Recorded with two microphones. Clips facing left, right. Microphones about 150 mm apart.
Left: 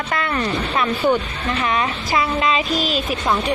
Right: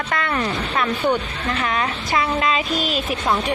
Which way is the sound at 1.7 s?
Centre (ahead or behind).